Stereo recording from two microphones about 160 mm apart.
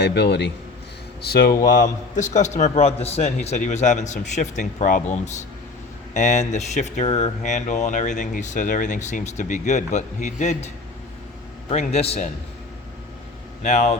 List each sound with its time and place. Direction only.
0.0 s a man's voice: 90° left
1.2 s speech: 80° left
1.8 s speech: 50° left (ahead or behind)
11.7 s a man's voice: 45° left (ahead or behind)
13.6 s speech: 45° left (ahead or behind)